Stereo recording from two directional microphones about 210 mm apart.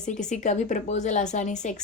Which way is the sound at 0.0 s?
35° left (ahead or behind).